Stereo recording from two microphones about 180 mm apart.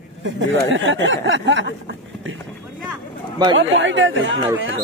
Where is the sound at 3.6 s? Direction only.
90° right.